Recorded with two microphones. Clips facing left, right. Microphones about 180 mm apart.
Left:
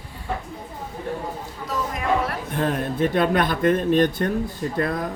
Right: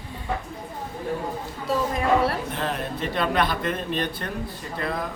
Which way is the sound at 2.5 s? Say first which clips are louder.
Left 4 dB; 50° left (ahead or behind).